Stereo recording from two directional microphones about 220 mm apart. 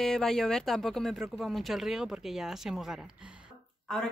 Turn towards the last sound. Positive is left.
turn(degrees=0)  # may be behind; listen again after turning